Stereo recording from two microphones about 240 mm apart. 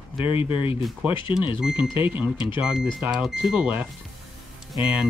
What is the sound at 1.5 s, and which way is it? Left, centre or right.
Speech, centre.